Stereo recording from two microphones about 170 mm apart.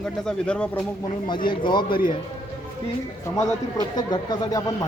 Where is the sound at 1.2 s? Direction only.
25° left (ahead or behind).